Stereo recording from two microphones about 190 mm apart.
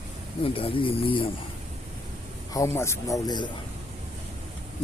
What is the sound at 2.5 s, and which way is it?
Speech, 15° left (ahead or behind).